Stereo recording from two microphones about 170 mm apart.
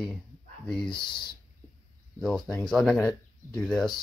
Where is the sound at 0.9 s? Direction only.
25° left (ahead or behind).